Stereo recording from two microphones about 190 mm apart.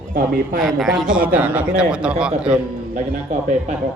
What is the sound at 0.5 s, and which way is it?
A man's voice, centre (ahead or behind).